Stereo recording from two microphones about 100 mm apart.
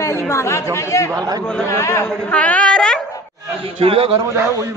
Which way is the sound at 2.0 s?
10° left (ahead or behind).